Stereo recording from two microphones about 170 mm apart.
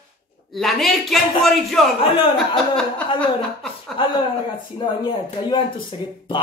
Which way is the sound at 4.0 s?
30° left (ahead or behind).